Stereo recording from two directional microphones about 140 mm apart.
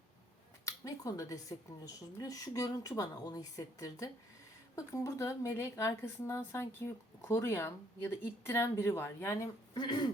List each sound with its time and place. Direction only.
0.6 s speech: 25° left (ahead or behind)